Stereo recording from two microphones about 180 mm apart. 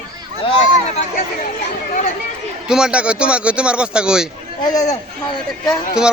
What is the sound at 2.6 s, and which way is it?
Speech, 5° right (ahead or behind).